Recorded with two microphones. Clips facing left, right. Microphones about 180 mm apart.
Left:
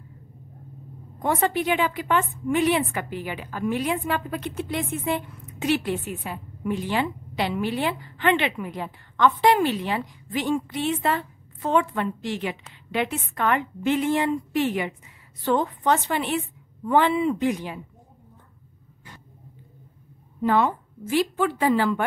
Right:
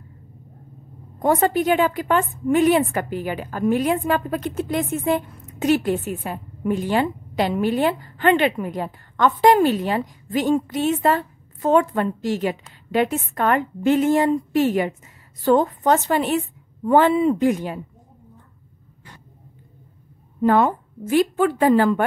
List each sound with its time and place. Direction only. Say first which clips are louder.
1.2 s a woman's voice: right 5 dB; 45° right (ahead or behind)
20.4 s a woman's voice: right 4 dB; 50° right (ahead or behind)